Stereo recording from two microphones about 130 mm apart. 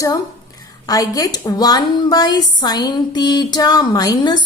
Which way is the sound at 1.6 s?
30° left (ahead or behind).